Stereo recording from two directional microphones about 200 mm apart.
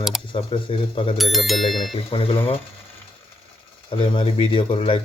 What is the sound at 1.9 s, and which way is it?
Speech, 25° left (ahead or behind).